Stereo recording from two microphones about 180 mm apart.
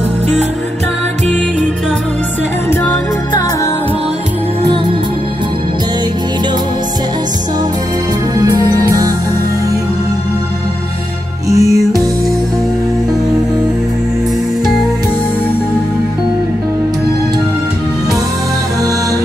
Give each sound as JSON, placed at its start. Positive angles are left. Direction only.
{"t": 8.4, "sound": "music", "side_deg": -20}
{"t": 11.4, "sound": "music", "side_deg": 35}